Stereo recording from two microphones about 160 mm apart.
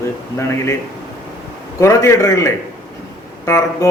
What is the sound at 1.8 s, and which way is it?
Speech, 20° left (ahead or behind).